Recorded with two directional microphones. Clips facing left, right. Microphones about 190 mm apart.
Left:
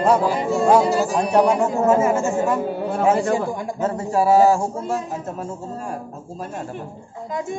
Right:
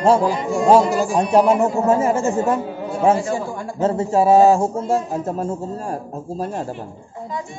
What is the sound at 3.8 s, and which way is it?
A man's voice, 25° right (ahead or behind).